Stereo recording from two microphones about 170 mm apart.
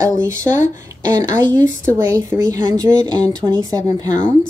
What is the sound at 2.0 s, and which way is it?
A woman's voice, 15° right (ahead or behind).